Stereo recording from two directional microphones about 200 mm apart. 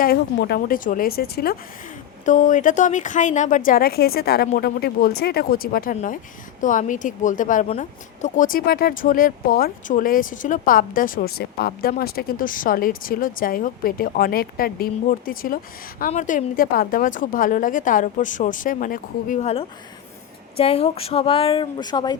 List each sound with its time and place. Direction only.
0.0 s speech: 55° left (ahead or behind); by 22.2 s 20° left (ahead or behind)